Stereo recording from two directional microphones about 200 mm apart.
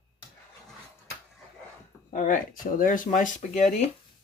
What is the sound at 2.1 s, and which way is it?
Speech, 40° left (ahead or behind).